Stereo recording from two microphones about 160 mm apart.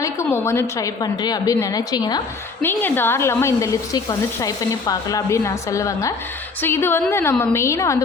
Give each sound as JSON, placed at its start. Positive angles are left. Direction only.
{"t": 0.0, "sound": "speech", "side_deg": 15}
{"t": 2.6, "sound": "a woman's voice", "side_deg": 15}